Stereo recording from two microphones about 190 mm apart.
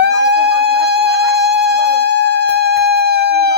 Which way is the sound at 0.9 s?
60° right (ahead or behind).